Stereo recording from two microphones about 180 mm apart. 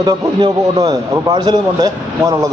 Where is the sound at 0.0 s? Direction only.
20° right (ahead or behind).